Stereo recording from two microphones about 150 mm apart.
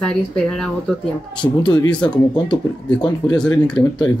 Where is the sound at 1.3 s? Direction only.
30° left (ahead or behind).